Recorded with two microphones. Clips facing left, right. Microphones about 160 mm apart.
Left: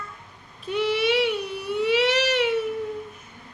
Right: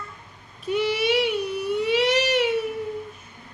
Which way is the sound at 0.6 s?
Centre (ahead or behind).